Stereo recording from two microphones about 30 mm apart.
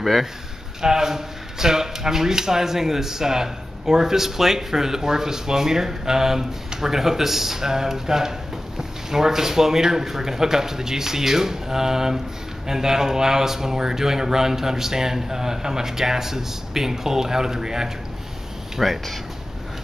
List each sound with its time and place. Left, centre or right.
0.0 s speech: centre
0.7 s speech: centre
18.8 s speech: centre